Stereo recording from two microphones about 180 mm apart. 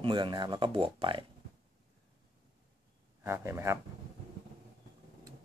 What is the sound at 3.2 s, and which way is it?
Speech, 15° right (ahead or behind).